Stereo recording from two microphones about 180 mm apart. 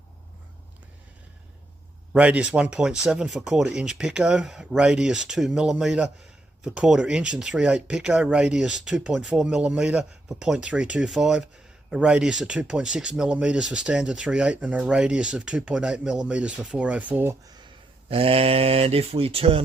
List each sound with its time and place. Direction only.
2.1 s speech: 5° right (ahead or behind)
18.1 s speech: 30° right (ahead or behind)